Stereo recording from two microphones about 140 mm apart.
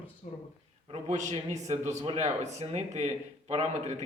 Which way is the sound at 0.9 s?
60° right (ahead or behind).